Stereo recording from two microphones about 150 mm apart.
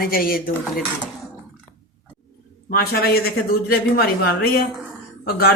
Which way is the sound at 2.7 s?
90° left.